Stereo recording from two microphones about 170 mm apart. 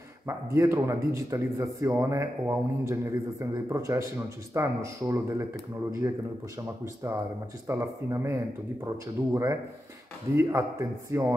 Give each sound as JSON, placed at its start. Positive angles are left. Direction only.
{"t": 0.3, "sound": "a man's voice", "side_deg": -15}
{"t": 6.8, "sound": "a man's voice", "side_deg": -15}